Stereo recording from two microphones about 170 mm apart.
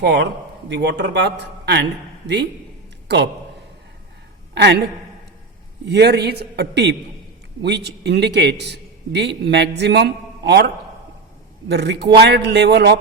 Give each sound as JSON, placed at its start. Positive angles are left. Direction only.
{"t": 0.0, "sound": "a man's voice", "side_deg": -85}
{"t": 4.5, "sound": "a woman's voice", "side_deg": -80}
{"t": 5.8, "sound": "a man's voice", "side_deg": -80}
{"t": 7.6, "sound": "a man's voice", "side_deg": -85}
{"t": 11.7, "sound": "a man's voice", "side_deg": -85}